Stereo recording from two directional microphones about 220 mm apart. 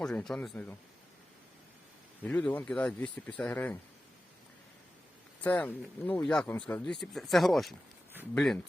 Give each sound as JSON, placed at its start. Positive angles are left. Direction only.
{"t": 0.0, "sound": "speech", "side_deg": 5}
{"t": 2.2, "sound": "speech", "side_deg": 5}
{"t": 5.4, "sound": "speech", "side_deg": 5}